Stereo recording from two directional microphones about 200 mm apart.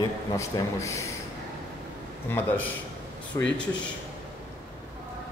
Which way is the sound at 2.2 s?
10° left (ahead or behind).